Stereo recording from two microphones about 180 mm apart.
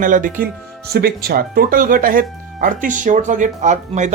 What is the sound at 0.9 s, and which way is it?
A man's voice, 60° right (ahead or behind).